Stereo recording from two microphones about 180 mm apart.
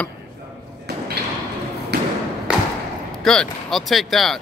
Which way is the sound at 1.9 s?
65° right (ahead or behind).